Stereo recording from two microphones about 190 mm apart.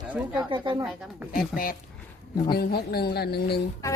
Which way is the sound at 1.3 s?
50° left (ahead or behind).